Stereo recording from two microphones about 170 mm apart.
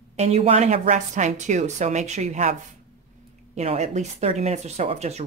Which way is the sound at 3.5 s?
40° right (ahead or behind).